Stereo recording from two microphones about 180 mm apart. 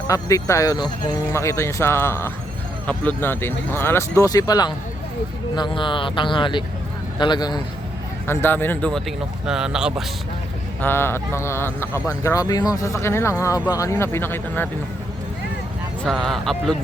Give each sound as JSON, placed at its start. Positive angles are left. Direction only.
{"t": 0.1, "sound": "speech", "side_deg": 20}
{"t": 8.3, "sound": "speech", "side_deg": 10}
{"t": 10.8, "sound": "speech", "side_deg": 10}
{"t": 16.0, "sound": "speech", "side_deg": 0}